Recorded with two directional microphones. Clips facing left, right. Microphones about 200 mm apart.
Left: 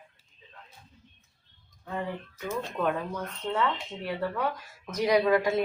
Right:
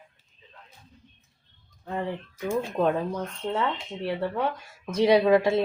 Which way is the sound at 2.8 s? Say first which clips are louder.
Right 4 dB; 30° right (ahead or behind).